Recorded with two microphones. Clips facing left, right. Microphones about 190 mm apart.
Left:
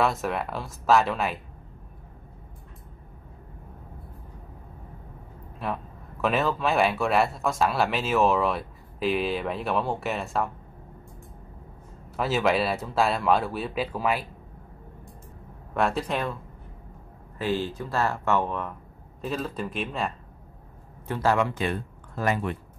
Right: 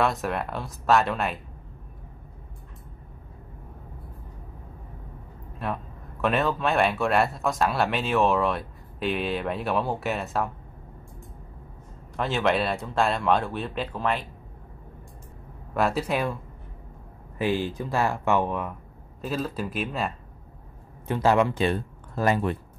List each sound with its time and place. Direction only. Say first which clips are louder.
0.0 s speech: even; centre (ahead or behind)
5.6 s a sound: even; centre (ahead or behind)
6.2 s speech: even; centre (ahead or behind)
12.2 s speech: left 1 dB; 5° left (ahead or behind)
15.7 s speech: right 1 dB; 5° right (ahead or behind)
17.4 s speech: right 2 dB; 15° right (ahead or behind)
19.2 s speech: right 1 dB; centre (ahead or behind)
21.1 s speech: right 3 dB; 20° right (ahead or behind)